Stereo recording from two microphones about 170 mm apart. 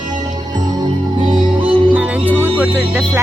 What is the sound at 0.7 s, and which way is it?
Music, 30° right (ahead or behind).